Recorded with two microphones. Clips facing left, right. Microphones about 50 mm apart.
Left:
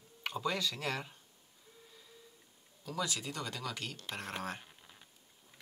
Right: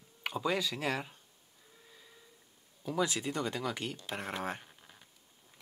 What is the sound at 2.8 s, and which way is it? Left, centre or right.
Speech, right.